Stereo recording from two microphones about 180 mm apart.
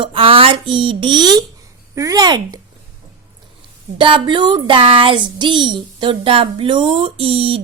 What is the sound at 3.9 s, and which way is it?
Speech, 25° right (ahead or behind).